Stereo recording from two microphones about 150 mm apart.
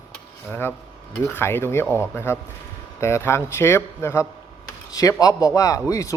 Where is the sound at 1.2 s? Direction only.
15° left (ahead or behind).